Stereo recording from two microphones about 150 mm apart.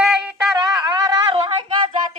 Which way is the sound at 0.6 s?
25° right (ahead or behind).